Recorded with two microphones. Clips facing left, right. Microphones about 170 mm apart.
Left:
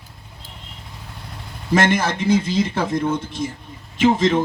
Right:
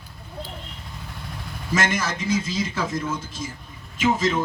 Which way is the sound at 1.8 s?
60° left (ahead or behind).